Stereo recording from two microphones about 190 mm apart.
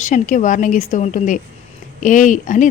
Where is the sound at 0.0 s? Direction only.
40° left (ahead or behind).